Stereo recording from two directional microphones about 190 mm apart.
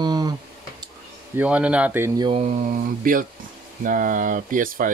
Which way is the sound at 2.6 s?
45° right (ahead or behind).